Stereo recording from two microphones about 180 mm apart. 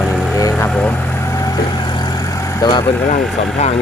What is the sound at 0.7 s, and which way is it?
Vehicle, 5° left (ahead or behind).